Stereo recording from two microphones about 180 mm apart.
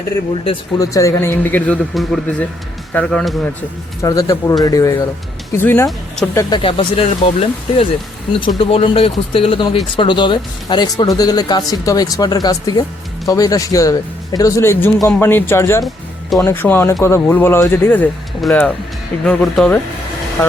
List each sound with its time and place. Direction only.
0.4 s speech: 25° left (ahead or behind); by 3.5 s 5° left (ahead or behind)
4.0 s speech: 20° left (ahead or behind)
6.3 s speech: 25° left (ahead or behind); by 19.8 s 5° left (ahead or behind)